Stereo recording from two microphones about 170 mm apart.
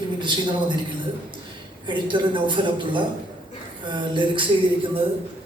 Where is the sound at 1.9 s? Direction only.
30° right (ahead or behind).